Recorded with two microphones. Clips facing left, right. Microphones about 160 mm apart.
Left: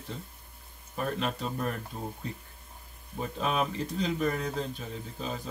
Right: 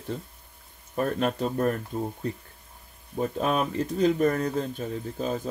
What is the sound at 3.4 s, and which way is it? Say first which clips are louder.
Speech: right 3 dB; 50° right (ahead or behind).